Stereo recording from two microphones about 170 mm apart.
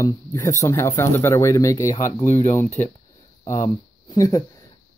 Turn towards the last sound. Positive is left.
turn(degrees=20)  # may be behind; listen again after turning